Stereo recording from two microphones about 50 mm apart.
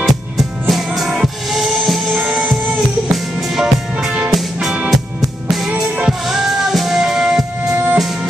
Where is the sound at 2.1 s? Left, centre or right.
Right.